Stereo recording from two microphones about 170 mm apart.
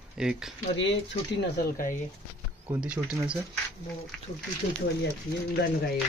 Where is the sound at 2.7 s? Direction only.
5° right (ahead or behind).